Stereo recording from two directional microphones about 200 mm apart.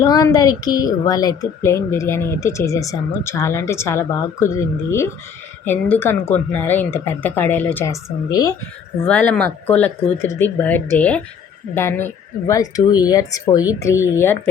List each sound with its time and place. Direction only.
0.0 s a woman's voice: 20° left (ahead or behind)